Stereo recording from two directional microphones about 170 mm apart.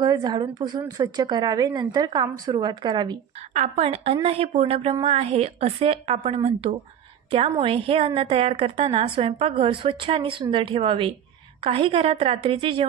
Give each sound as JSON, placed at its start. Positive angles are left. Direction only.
{"t": 0.0, "sound": "a woman's voice", "side_deg": -25}
{"t": 3.5, "sound": "a woman's voice", "side_deg": -40}